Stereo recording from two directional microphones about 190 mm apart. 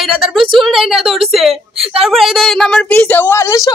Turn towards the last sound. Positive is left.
turn(degrees=15)  # may be behind; listen again after turning